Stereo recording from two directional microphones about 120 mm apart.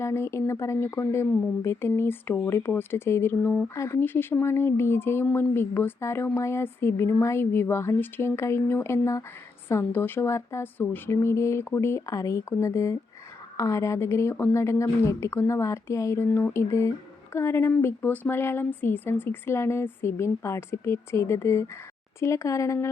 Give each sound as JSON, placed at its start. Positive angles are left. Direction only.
{"t": 0.0, "sound": "speech", "side_deg": 20}